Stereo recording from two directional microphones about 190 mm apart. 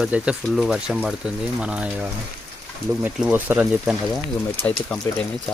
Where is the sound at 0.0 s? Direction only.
5° right (ahead or behind).